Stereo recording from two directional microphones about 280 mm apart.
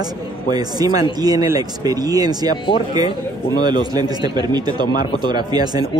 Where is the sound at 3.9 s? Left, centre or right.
Centre.